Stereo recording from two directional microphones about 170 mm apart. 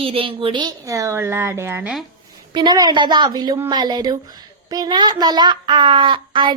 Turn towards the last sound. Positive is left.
turn(degrees=-30)  # may be behind; listen again after turning